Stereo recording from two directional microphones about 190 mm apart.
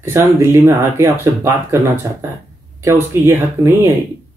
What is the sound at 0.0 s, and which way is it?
Speech, 15° right (ahead or behind).